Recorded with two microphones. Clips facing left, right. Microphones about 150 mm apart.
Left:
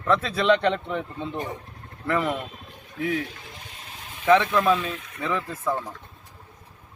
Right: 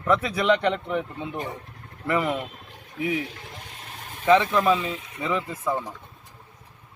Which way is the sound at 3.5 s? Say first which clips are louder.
Right 2 dB; 55° right (ahead or behind).